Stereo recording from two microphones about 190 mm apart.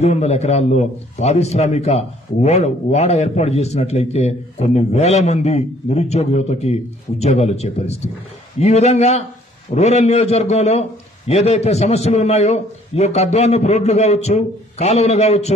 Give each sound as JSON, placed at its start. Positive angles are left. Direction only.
{"t": 0.0, "sound": "a man's voice", "side_deg": 35}